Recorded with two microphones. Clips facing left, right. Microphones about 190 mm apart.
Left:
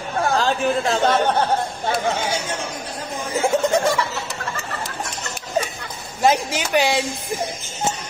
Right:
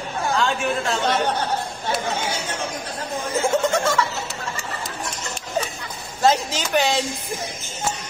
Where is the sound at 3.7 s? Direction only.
15° left (ahead or behind).